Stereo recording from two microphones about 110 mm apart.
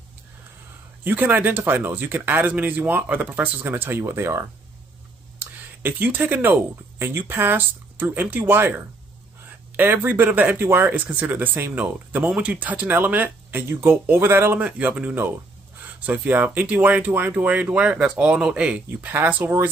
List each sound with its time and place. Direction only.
1.0 s speech: 15° right (ahead or behind)